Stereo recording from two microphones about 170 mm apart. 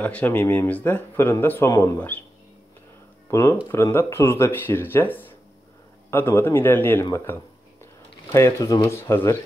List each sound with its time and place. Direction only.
0.0 s speech: 10° left (ahead or behind)
3.3 s speech: 15° left (ahead or behind)